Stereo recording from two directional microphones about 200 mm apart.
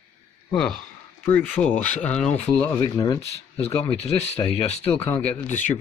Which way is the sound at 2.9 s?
20° left (ahead or behind).